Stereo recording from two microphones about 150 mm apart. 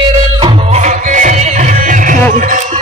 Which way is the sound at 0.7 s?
50° right (ahead or behind).